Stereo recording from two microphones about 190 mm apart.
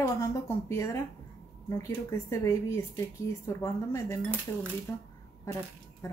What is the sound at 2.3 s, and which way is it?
Speech, 15° left (ahead or behind).